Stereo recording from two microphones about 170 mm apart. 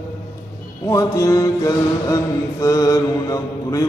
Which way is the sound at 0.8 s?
15° left (ahead or behind).